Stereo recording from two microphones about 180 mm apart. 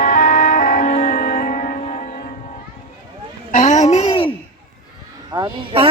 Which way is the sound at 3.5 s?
45° left (ahead or behind).